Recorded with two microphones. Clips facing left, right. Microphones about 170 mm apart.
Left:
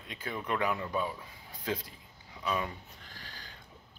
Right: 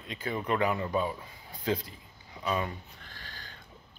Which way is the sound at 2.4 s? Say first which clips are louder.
Right 2 dB; 5° right (ahead or behind).